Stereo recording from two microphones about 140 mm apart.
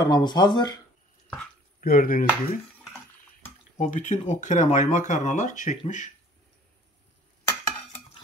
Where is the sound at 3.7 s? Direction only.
60° left (ahead or behind).